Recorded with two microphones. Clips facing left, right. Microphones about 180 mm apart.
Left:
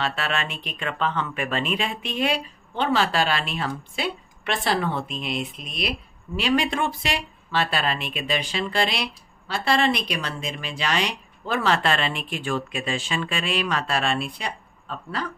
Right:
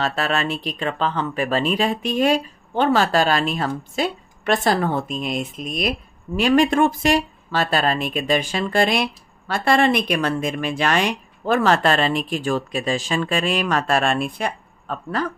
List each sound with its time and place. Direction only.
0.0 s speech: 40° right (ahead or behind)